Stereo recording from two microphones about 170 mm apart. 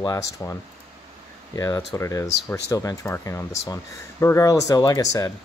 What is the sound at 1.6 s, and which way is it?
Speech, 15° left (ahead or behind).